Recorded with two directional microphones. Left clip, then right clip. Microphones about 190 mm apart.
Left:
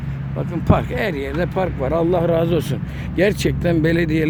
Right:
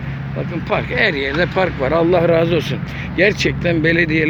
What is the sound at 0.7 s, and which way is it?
Speech, 15° left (ahead or behind).